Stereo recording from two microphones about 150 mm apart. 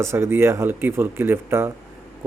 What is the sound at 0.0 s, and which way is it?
Speech, 15° right (ahead or behind).